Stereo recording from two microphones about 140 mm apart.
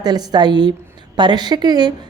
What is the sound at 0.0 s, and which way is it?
Speech, 30° right (ahead or behind).